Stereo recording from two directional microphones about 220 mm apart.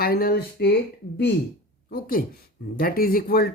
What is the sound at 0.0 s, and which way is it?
Speech, 45° left (ahead or behind).